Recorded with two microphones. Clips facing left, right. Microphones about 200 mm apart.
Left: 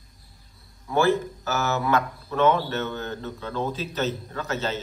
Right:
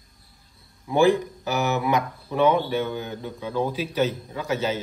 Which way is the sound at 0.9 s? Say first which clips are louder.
Right 3 dB; 15° right (ahead or behind).